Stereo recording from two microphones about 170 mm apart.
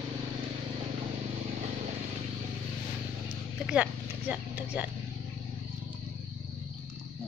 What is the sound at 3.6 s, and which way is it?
Speech, 10° right (ahead or behind).